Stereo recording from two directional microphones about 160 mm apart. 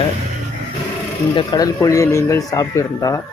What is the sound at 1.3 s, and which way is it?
Speech, 25° left (ahead or behind).